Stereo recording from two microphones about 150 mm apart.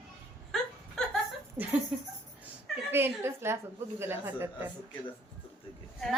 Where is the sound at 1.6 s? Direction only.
15° right (ahead or behind).